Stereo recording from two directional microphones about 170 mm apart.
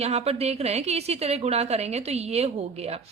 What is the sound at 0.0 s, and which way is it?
A woman's voice, 40° right (ahead or behind).